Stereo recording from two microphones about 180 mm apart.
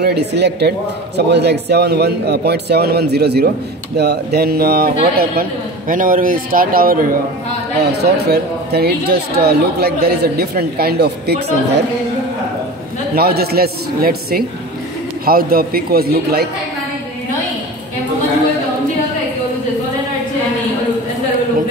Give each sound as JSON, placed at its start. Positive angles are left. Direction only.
{"t": 0.0, "sound": "a man's voice", "side_deg": -65}
{"t": 8.0, "sound": "a man's voice", "side_deg": -65}
{"t": 13.1, "sound": "a man's voice", "side_deg": -60}